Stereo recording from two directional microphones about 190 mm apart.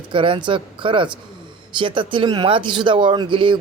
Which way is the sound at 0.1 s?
25° right (ahead or behind).